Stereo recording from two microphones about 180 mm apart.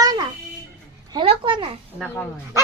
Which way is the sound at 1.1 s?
30° right (ahead or behind).